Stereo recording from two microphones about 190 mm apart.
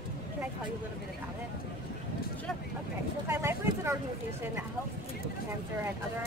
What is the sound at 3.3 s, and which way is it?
Speech, 15° right (ahead or behind).